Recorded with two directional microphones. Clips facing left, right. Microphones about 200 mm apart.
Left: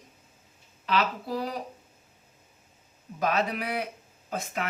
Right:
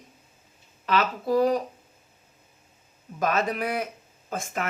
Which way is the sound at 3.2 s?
45° right (ahead or behind).